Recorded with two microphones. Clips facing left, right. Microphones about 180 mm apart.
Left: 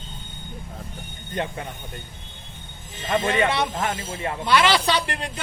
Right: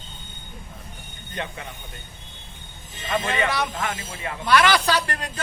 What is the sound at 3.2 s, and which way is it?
Speech, 25° left (ahead or behind).